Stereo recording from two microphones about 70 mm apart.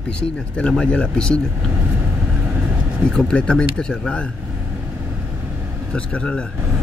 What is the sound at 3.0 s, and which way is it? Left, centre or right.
Speech, centre.